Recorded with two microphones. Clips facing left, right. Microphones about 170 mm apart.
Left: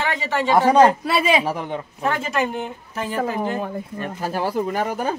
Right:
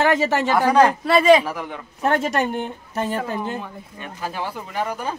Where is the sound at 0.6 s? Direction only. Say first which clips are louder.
Left 2 dB; 25° left (ahead or behind).